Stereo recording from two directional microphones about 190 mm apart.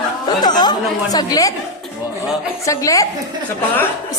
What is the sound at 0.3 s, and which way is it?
Chatter, 20° left (ahead or behind).